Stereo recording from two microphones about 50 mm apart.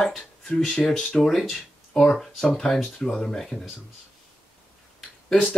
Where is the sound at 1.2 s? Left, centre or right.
Centre.